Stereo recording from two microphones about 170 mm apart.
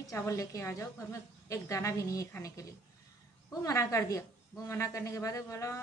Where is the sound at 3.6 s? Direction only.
20° left (ahead or behind).